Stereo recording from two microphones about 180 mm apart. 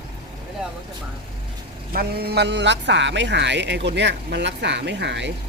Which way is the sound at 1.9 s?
55° right (ahead or behind).